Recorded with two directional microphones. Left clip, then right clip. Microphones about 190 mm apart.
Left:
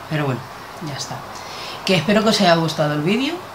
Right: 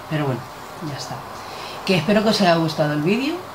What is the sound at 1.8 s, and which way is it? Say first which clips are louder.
Speech: left 2 dB; 15° left (ahead or behind).